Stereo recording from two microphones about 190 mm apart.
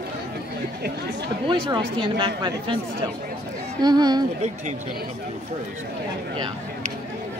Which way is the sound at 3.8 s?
20° right (ahead or behind).